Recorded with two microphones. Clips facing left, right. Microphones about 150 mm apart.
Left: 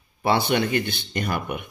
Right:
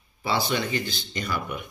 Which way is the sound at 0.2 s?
60° left (ahead or behind).